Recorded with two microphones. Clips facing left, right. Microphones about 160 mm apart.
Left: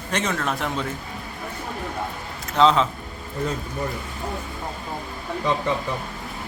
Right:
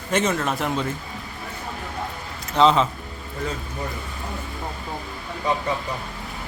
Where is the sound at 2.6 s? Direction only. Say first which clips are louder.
Even; centre (ahead or behind).